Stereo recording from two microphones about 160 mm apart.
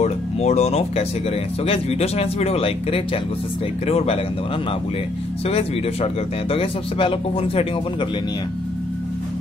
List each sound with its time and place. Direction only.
0.0 s music: 45° left (ahead or behind)
1.7 s speech: 40° left (ahead or behind)
5.5 s speech: 40° left (ahead or behind)